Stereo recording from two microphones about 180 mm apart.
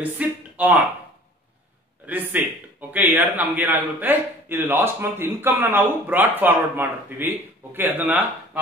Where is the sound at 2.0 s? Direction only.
10° right (ahead or behind).